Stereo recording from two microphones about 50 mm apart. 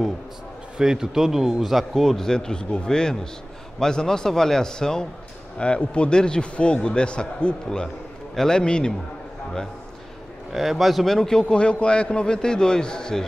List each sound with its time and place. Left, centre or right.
0.7 s a man's voice: centre
10.5 s a man's voice: centre
11.1 s a man's voice: centre